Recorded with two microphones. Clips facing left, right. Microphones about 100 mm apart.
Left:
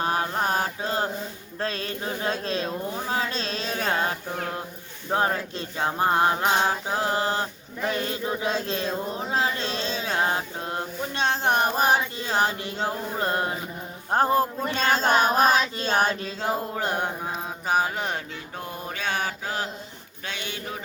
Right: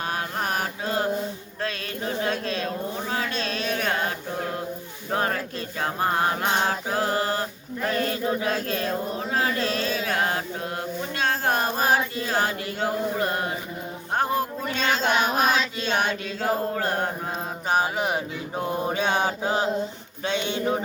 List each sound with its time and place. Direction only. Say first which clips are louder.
0.0 s mantra: left 3 dB; 30° left (ahead or behind)
1.6 s chant: even; 30° left (ahead or behind)
5.1 s chant: left 1 dB; 20° left (ahead or behind)
14.1 s child singing: left 3 dB; 35° left (ahead or behind)
16.7 s mantra: right 1 dB; 15° left (ahead or behind)
17.7 s mantra: right 1 dB; centre (ahead or behind)
18.5 s mantra: right 9 dB; 20° right (ahead or behind)